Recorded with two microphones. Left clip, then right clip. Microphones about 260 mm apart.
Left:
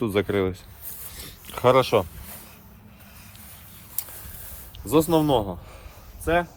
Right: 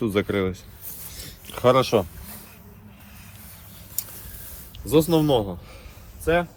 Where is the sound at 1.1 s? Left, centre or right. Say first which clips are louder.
Left 1 dB; left.